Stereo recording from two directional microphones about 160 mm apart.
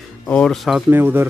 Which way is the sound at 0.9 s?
15° right (ahead or behind).